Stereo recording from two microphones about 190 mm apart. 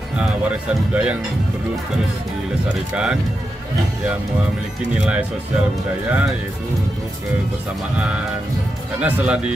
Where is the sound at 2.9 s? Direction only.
5° right (ahead or behind).